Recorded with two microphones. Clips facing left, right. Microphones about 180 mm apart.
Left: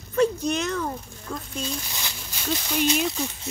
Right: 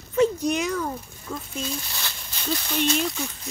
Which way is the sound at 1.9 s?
15° left (ahead or behind).